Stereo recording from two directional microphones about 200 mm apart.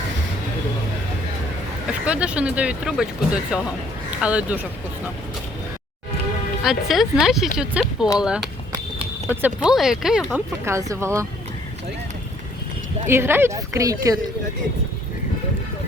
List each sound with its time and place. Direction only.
1.9 s speech: 5° right (ahead or behind)
6.6 s speech: centre (ahead or behind)
8.7 s a sound: 30° right (ahead or behind)
9.3 s speech: 5° right (ahead or behind)
10.7 s speech: 15° right (ahead or behind)
13.1 s speech: 10° right (ahead or behind)